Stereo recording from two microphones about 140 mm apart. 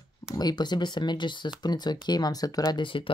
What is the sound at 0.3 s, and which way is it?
Speech, 30° left (ahead or behind).